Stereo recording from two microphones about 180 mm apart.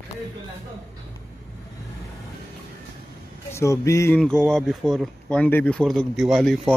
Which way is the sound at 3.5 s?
15° left (ahead or behind).